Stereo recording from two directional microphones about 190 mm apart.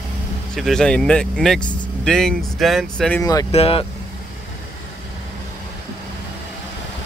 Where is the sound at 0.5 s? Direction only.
Centre (ahead or behind).